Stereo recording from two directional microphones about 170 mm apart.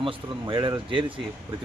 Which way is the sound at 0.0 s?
30° right (ahead or behind).